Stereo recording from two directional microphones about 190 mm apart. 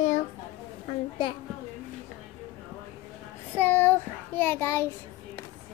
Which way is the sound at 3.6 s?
10° left (ahead or behind).